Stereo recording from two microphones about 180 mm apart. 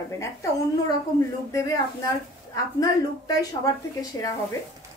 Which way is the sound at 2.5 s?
20° left (ahead or behind).